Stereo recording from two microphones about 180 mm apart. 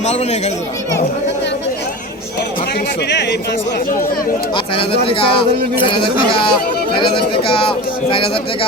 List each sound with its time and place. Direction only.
0.0 s speech: 40° left (ahead or behind)
4.5 s speech: 30° left (ahead or behind)